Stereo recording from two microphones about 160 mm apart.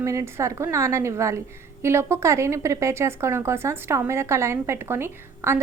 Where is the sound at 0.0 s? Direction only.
20° right (ahead or behind).